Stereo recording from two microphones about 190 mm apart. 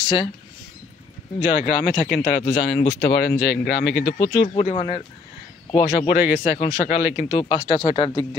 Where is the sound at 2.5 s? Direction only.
70° left (ahead or behind).